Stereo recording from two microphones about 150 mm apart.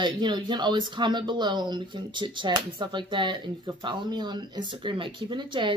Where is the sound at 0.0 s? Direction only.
30° right (ahead or behind).